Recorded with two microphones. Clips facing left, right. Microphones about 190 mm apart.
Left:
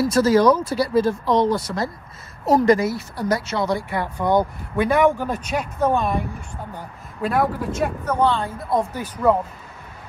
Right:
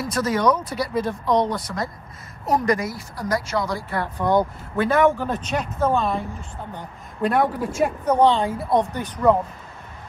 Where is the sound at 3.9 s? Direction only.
15° left (ahead or behind).